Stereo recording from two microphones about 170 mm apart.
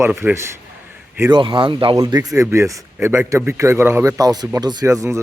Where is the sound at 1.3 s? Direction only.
30° right (ahead or behind).